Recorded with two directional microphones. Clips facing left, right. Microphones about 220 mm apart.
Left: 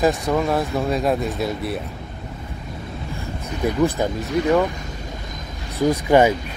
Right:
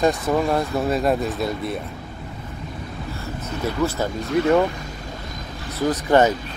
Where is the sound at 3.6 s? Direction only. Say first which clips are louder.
Left 4 dB; 15° left (ahead or behind).